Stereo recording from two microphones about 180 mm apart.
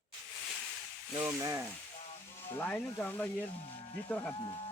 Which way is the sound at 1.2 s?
15° right (ahead or behind).